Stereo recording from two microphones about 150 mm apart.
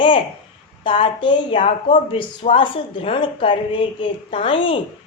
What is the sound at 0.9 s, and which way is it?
A woman's voice, 35° left (ahead or behind).